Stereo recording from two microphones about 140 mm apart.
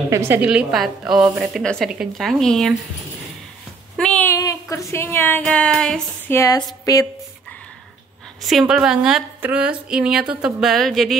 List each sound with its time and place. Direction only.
0.1 s a woman's voice: 15° right (ahead or behind)
0.5 s a woman's voice: 5° right (ahead or behind)
3.9 s a sound: 5° left (ahead or behind)
4.3 s a sound: 25° left (ahead or behind)
5.4 s a woman's voice: 5° left (ahead or behind)
6.2 s a woman's voice: 20° left (ahead or behind)
8.4 s a woman's voice: centre (ahead or behind)